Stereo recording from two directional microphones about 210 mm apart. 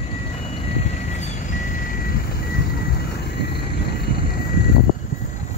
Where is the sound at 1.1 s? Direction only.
35° left (ahead or behind).